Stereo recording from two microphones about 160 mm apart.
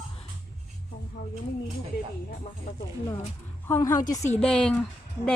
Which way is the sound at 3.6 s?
15° left (ahead or behind).